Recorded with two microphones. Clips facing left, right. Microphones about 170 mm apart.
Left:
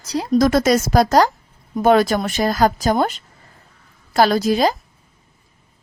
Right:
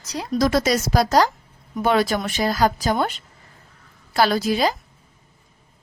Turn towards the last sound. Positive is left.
turn(degrees=40)  # may be behind; listen again after turning